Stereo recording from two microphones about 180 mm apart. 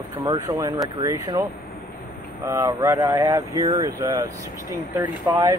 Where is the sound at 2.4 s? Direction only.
15° right (ahead or behind).